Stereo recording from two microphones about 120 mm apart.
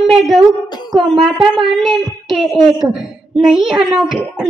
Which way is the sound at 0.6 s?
35° left (ahead or behind).